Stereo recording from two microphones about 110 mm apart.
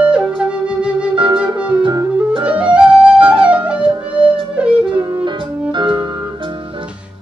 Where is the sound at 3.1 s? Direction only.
50° right (ahead or behind).